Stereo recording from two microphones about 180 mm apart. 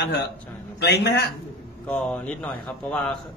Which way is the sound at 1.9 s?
5° left (ahead or behind).